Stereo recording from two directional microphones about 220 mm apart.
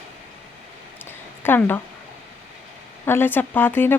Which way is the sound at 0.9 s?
10° left (ahead or behind).